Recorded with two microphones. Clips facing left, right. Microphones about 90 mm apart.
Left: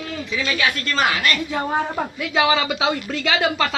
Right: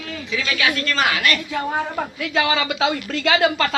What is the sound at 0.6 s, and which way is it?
A woman's voice, 30° left (ahead or behind).